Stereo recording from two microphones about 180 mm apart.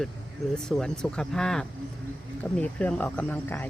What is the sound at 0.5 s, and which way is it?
Speech, 5° left (ahead or behind).